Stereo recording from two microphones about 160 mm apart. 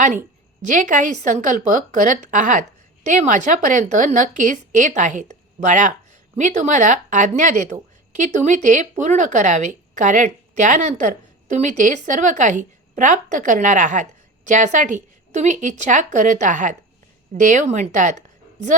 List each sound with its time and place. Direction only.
0.7 s a woman's voice: 50° right (ahead or behind)